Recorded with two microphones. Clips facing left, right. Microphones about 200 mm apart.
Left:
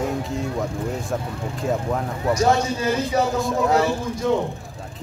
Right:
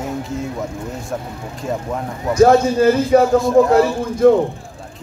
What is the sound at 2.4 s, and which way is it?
Speech, 55° right (ahead or behind).